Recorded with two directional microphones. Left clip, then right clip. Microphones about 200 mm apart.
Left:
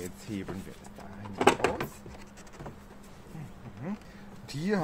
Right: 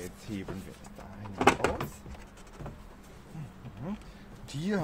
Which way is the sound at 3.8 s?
20° left (ahead or behind).